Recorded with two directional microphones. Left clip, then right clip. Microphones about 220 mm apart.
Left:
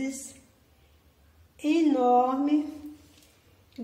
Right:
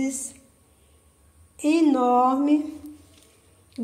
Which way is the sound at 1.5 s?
30° right (ahead or behind).